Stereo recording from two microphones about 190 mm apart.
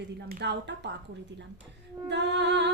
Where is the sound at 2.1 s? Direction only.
65° right (ahead or behind).